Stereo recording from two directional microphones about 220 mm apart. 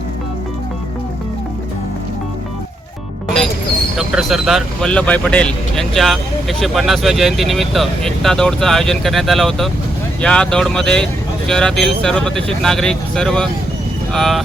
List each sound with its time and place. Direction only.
3.2 s music: centre (ahead or behind)
3.9 s speech: centre (ahead or behind)